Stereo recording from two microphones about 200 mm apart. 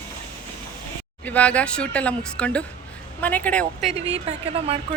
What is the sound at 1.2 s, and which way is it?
Speech, 5° left (ahead or behind).